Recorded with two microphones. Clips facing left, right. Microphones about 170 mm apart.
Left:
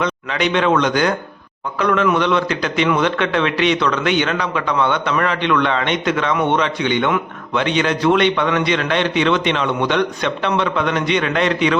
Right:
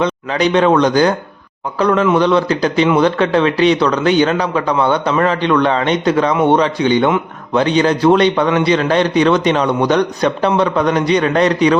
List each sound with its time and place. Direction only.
0.0 s a man's voice: 35° right (ahead or behind)